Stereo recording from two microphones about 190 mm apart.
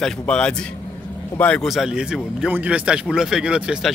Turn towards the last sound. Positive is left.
turn(degrees=-5)  # may be behind; listen again after turning